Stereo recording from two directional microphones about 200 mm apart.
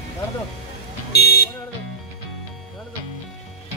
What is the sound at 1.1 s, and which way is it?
Vehicle, 50° left (ahead or behind).